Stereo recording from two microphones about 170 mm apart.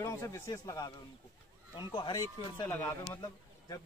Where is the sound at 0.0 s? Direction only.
15° left (ahead or behind).